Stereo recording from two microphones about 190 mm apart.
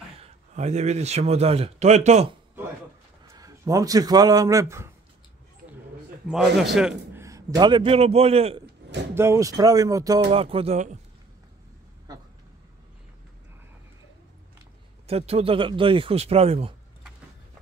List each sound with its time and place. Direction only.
0.2 s a man's voice: 35° right (ahead or behind)
3.3 s speech: 20° right (ahead or behind)
6.2 s a man's voice: centre (ahead or behind)
7.2 s speech: 20° right (ahead or behind)
9.1 s speech: 15° right (ahead or behind)
10.3 s speech: 30° right (ahead or behind)
15.0 s speech: 30° right (ahead or behind)